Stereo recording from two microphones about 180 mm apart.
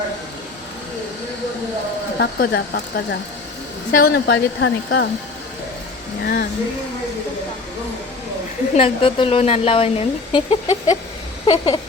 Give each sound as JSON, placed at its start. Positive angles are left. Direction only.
{"t": 2.1, "sound": "speech", "side_deg": 70}
{"t": 6.2, "sound": "speech", "side_deg": 65}
{"t": 8.7, "sound": "speech", "side_deg": 30}